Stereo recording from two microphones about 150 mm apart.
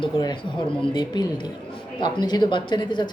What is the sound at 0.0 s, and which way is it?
A woman's voice, 30° left (ahead or behind).